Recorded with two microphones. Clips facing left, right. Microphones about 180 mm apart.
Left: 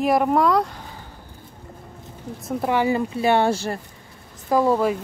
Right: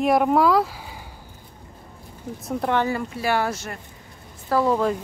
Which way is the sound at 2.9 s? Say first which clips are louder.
Left 4 dB; 25° left (ahead or behind).